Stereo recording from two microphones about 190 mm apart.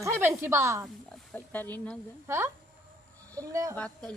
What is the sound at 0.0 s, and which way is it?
Speech, 15° right (ahead or behind).